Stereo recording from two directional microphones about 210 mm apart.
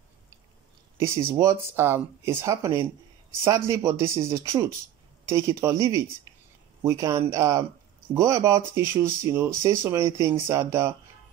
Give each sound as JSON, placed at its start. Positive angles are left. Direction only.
{"t": 0.9, "sound": "speech", "side_deg": -15}